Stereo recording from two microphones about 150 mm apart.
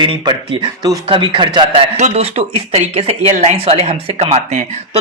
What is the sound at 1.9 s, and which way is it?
Speech, 50° right (ahead or behind).